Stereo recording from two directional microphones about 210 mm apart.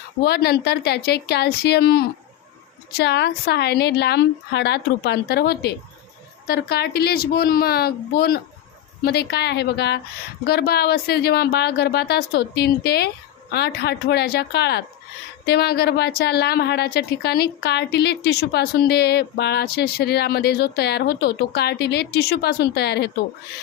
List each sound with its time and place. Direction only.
0.2 s a woman's voice: 50° left (ahead or behind)